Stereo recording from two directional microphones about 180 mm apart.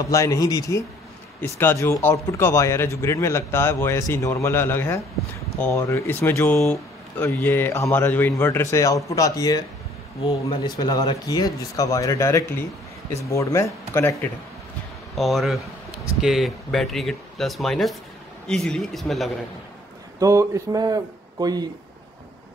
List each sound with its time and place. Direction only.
0.0 s speech: 20° left (ahead or behind)
15.1 s speech: centre (ahead or behind)
20.2 s a man's voice: 20° right (ahead or behind)